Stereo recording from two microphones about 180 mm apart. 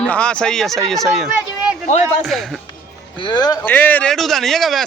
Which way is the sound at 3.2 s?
25° left (ahead or behind).